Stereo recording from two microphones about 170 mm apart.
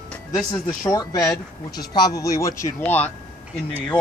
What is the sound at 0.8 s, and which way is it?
Speech, 20° left (ahead or behind).